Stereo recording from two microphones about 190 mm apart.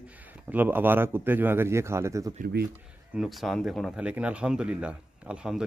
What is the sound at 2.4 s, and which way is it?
Speech, 55° right (ahead or behind).